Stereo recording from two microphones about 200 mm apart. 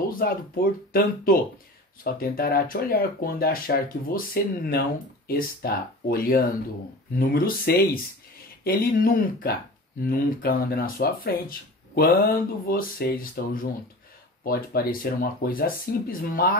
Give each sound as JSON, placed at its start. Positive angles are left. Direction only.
{"t": 0.2, "sound": "speech", "side_deg": 50}